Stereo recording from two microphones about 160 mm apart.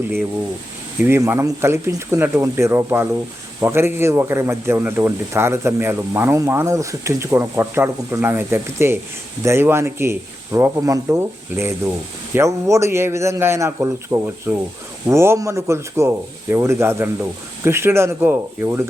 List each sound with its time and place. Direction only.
1.0 s a man's voice: 15° right (ahead or behind)